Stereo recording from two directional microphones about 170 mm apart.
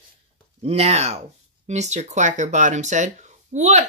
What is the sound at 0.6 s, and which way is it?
Speech, 40° right (ahead or behind).